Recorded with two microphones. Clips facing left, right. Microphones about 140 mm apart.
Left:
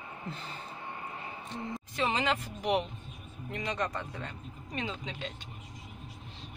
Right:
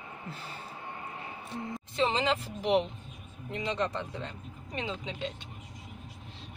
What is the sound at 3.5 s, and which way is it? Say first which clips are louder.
Speech: right 2 dB; 25° right (ahead or behind).